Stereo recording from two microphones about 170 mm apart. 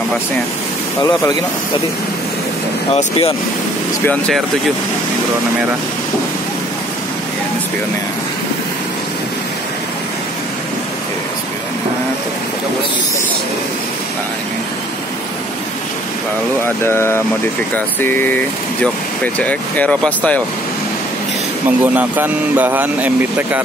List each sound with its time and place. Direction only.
2.9 s speech: 35° left (ahead or behind)
16.6 s speech: 15° left (ahead or behind)
21.6 s speech: 10° right (ahead or behind)